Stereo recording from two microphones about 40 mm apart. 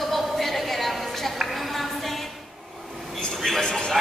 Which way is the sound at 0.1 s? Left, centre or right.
Centre.